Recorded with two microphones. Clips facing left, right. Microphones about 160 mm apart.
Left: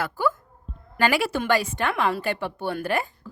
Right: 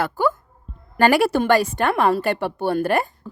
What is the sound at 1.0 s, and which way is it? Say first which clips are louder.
Speech: right 6 dB; 50° right (ahead or behind).